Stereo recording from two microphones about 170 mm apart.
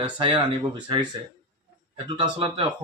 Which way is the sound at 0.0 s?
30° right (ahead or behind).